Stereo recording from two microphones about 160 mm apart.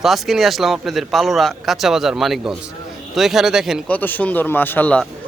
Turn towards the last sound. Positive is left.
turn(degrees=10)  # may be behind; listen again after turning